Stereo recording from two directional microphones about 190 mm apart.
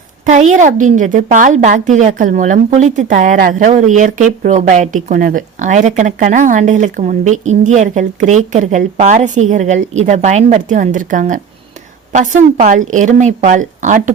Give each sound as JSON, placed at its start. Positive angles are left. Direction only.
{"t": 0.3, "sound": "speech", "side_deg": -40}